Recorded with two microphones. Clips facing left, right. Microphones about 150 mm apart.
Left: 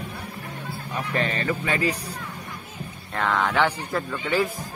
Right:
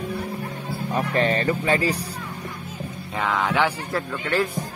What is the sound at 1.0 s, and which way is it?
Speech, 40° right (ahead or behind).